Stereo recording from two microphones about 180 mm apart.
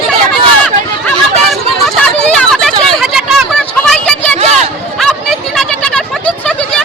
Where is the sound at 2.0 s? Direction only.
5° left (ahead or behind).